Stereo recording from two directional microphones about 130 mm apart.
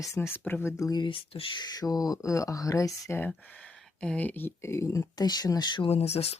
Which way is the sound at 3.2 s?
10° left (ahead or behind).